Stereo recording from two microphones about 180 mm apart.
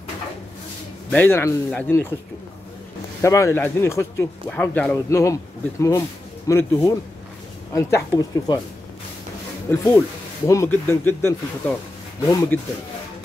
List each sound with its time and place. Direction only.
1.1 s speech: 10° left (ahead or behind)
3.2 s speech: 15° left (ahead or behind)
9.7 s speech: 15° left (ahead or behind)